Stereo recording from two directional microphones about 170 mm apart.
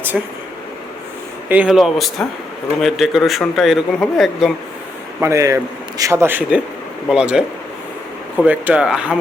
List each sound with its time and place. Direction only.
0.1 s speech: centre (ahead or behind)
1.5 s speech: 5° right (ahead or behind)
5.2 s a man's voice: 20° right (ahead or behind)